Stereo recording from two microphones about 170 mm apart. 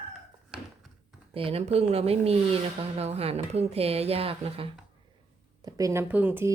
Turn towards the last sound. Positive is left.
turn(degrees=-10)  # may be behind; listen again after turning